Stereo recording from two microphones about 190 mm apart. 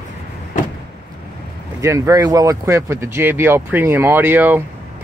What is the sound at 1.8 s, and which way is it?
Speech, 15° right (ahead or behind).